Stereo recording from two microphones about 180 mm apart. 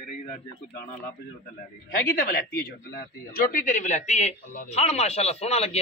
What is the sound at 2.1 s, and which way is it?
A man's voice, 55° left (ahead or behind).